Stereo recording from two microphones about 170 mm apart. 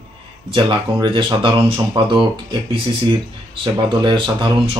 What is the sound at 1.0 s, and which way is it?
Speech, 30° right (ahead or behind).